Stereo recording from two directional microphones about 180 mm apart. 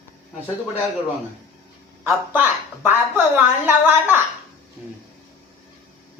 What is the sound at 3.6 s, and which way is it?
Speech, 10° right (ahead or behind).